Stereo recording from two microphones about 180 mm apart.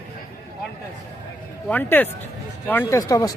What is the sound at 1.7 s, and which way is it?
Speech, 10° left (ahead or behind).